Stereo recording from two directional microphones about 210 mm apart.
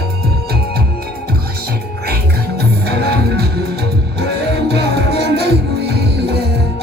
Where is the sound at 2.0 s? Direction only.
50° right (ahead or behind).